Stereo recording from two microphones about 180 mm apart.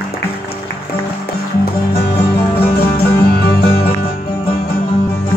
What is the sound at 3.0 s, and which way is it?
Music, 65° left (ahead or behind).